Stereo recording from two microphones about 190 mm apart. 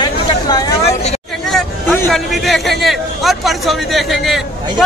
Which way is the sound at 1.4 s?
Centre (ahead or behind).